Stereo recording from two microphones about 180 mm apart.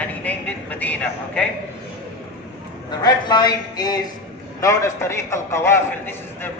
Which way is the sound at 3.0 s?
20° left (ahead or behind).